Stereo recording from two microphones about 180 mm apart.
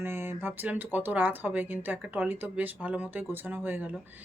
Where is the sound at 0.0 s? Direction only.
15° right (ahead or behind).